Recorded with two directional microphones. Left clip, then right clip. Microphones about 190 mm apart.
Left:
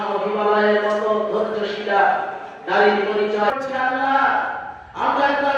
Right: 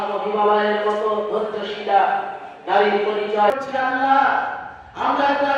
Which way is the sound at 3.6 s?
Centre (ahead or behind).